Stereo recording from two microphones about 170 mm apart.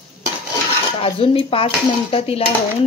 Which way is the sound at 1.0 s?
35° left (ahead or behind).